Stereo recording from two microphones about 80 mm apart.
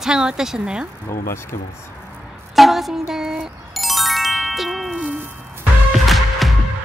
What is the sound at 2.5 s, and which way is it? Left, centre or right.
Music, centre.